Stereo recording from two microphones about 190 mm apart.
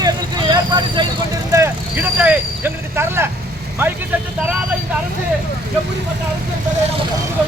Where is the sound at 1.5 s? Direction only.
10° right (ahead or behind).